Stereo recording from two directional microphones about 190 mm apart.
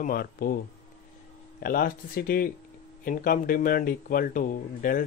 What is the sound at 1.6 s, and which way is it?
Speech, 50° left (ahead or behind).